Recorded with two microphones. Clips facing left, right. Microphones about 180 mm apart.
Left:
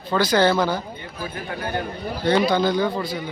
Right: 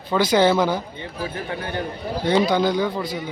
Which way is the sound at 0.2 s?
20° right (ahead or behind).